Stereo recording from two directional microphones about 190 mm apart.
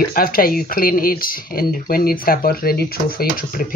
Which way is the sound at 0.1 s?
50° left (ahead or behind).